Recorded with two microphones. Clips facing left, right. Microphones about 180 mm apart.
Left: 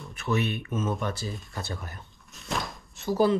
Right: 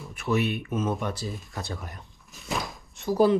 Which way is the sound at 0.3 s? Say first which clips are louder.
Right 2 dB; 15° right (ahead or behind).